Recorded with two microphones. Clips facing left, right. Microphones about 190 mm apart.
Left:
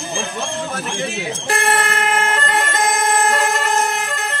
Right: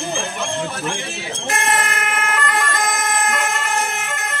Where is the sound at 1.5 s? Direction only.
35° left (ahead or behind).